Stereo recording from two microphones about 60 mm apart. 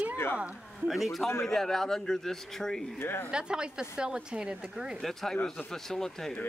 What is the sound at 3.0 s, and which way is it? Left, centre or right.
Speech, left.